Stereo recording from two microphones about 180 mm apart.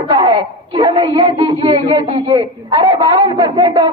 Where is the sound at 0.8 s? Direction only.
25° right (ahead or behind).